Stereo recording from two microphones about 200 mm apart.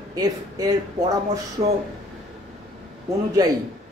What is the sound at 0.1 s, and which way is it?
Speech, 20° right (ahead or behind).